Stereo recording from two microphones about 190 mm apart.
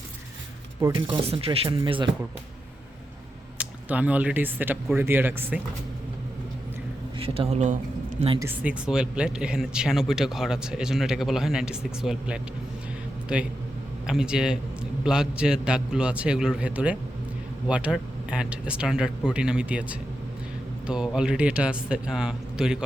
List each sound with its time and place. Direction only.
0.8 s speech: 20° right (ahead or behind)
3.6 s speech: 5° right (ahead or behind)
7.2 s speech: 30° right (ahead or behind)
8.4 s a man's voice: 10° right (ahead or behind)